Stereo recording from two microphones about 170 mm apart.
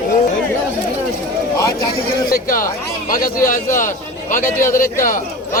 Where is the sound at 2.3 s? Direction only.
55° left (ahead or behind).